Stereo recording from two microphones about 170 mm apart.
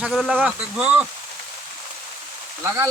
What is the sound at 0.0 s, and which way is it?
Speech, centre (ahead or behind).